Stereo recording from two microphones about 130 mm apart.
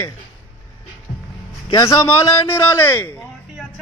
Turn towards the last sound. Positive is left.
turn(degrees=20)  # may be behind; listen again after turning